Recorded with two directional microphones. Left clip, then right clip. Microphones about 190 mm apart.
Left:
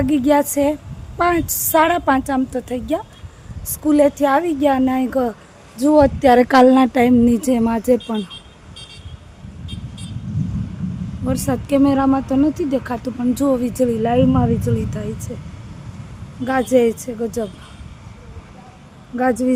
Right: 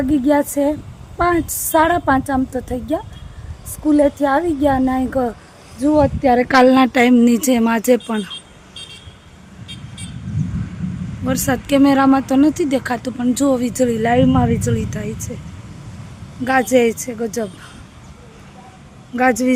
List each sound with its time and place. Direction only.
0.0 s speech: centre (ahead or behind)
5.9 s speech: 40° left (ahead or behind)
6.5 s speech: 15° left (ahead or behind); by 8.0 s centre (ahead or behind)
9.6 s vehicle: 25° right (ahead or behind)
11.3 s speech: centre (ahead or behind)
16.4 s speech: 5° right (ahead or behind)
19.1 s speech: 5° right (ahead or behind)